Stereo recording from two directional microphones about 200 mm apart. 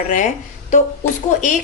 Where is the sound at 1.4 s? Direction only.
40° left (ahead or behind).